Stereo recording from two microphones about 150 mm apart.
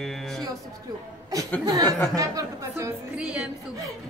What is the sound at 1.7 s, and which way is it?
Speech, 20° right (ahead or behind).